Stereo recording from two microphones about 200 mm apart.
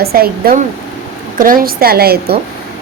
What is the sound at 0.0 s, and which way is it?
Speech, 50° right (ahead or behind).